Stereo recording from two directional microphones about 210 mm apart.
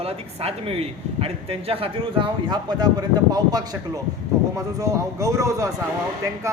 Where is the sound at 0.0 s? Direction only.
25° right (ahead or behind).